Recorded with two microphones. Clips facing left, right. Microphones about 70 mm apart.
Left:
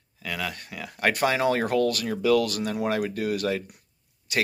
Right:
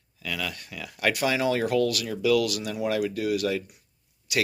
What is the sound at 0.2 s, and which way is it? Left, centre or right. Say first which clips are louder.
Speech: left 1 dB; left.